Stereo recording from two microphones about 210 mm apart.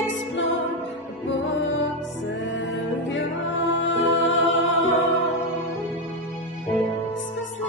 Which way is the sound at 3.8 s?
60° left (ahead or behind).